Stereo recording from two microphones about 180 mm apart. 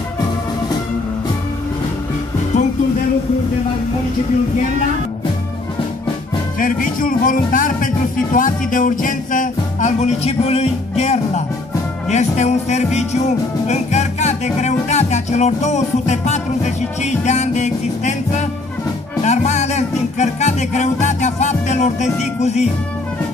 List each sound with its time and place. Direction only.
6.6 s speech: 50° left (ahead or behind)
12.1 s music: 40° left (ahead or behind)